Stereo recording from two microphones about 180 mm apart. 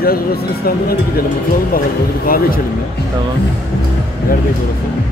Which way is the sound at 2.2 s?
55° left (ahead or behind).